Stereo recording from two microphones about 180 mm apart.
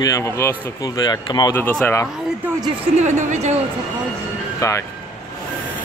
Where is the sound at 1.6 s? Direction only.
10° left (ahead or behind).